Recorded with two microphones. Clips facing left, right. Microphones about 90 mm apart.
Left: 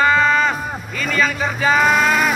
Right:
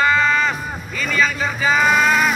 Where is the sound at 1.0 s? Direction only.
45° left (ahead or behind).